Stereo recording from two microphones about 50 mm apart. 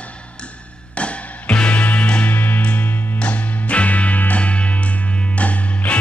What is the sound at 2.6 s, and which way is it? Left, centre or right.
Music, left.